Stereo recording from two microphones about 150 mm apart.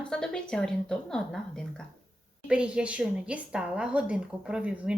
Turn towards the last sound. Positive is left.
turn(degrees=-5)  # may be behind; listen again after turning